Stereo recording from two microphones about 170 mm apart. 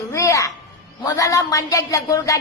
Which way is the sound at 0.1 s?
20° left (ahead or behind).